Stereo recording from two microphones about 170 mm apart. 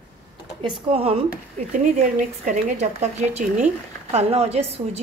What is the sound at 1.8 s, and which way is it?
A woman's voice, 45° right (ahead or behind).